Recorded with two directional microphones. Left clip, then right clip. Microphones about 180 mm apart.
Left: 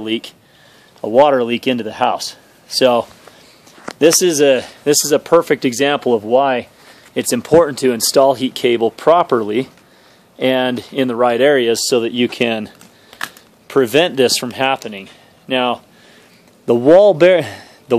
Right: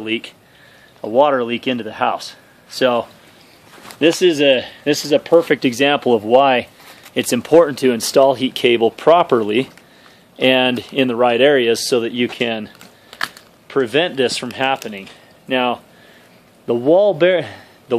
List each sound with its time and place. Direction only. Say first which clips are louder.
0.0 s speech: left 1 dB; 45° left (ahead or behind)
4.0 s speech: left 2 dB; 25° left (ahead or behind)
12.3 s speech: left 3 dB; 55° left (ahead or behind)
13.1 s shuffling cards: right 2 dB; 5° right (ahead or behind)
13.7 s speech: left 4 dB; 50° left (ahead or behind); by 15.8 s 30° left (ahead or behind)
16.6 s a man's voice: left 5 dB; 45° left (ahead or behind)